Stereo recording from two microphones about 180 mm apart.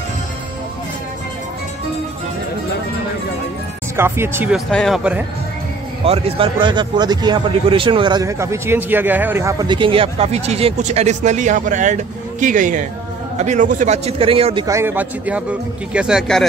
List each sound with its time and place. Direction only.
3.9 s a man's voice: 15° right (ahead or behind)
4.6 s speech: centre (ahead or behind)
6.0 s a man's voice: 35° right (ahead or behind)
14.7 s a man's voice: 15° right (ahead or behind)